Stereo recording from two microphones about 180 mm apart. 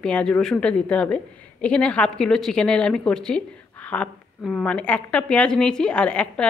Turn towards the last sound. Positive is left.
turn(degrees=5)  # may be behind; listen again after turning